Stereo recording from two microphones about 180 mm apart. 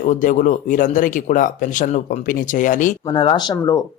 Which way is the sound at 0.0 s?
45° left (ahead or behind).